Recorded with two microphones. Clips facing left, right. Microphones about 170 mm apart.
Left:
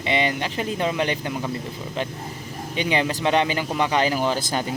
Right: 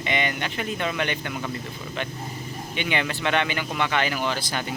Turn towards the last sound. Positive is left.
turn(degrees=40)  # may be behind; listen again after turning